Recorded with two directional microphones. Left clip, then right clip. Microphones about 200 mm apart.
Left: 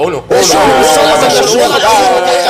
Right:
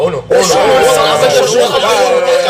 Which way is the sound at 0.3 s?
30° left (ahead or behind).